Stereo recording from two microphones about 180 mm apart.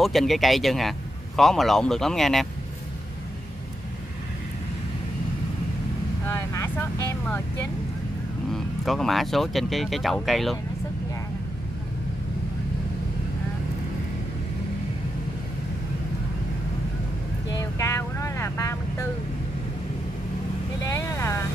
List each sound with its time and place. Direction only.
0.0 s speech: centre (ahead or behind)
6.2 s vehicle: 15° left (ahead or behind)
8.5 s speech: centre (ahead or behind)
17.5 s vehicle: 20° left (ahead or behind)
20.8 s vehicle: 15° left (ahead or behind)